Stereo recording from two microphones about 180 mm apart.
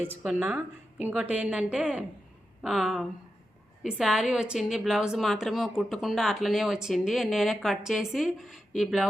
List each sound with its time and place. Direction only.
0.0 s a woman's voice: 10° right (ahead or behind)